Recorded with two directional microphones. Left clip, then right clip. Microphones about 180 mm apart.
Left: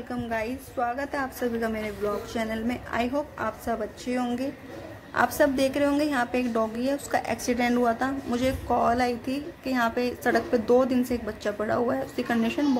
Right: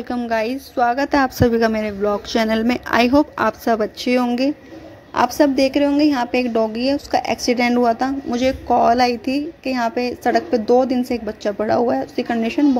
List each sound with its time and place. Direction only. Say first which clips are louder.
0.1 s a woman's voice: right 10 dB; 55° right (ahead or behind)
5.1 s a woman's voice: right 7 dB; 30° right (ahead or behind)